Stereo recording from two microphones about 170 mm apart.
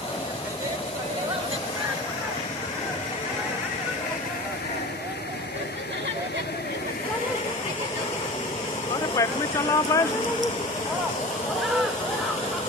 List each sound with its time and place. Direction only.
9.1 s speech: 20° left (ahead or behind)